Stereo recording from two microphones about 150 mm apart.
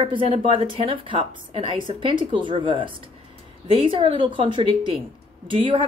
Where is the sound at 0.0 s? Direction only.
40° right (ahead or behind).